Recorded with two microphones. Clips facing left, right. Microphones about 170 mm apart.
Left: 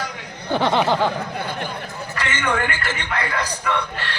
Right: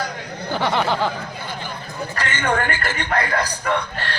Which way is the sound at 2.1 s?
45° right (ahead or behind).